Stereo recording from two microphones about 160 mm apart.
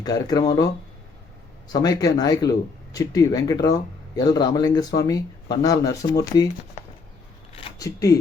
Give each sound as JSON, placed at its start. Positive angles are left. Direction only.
{"t": 0.0, "sound": "speech", "side_deg": 25}
{"t": 1.7, "sound": "speech", "side_deg": 25}
{"t": 7.8, "sound": "speech", "side_deg": 20}